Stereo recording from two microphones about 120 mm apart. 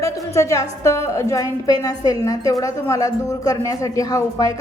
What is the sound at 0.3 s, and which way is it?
A woman's voice, 25° left (ahead or behind).